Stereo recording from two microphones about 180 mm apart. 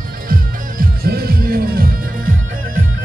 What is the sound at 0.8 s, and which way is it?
Music, 60° right (ahead or behind).